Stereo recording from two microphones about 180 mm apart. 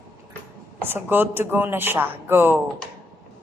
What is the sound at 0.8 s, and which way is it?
A woman's voice, 10° right (ahead or behind).